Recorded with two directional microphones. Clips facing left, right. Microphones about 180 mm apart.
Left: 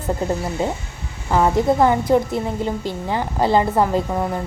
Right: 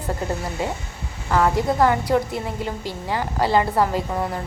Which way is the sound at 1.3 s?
20° left (ahead or behind).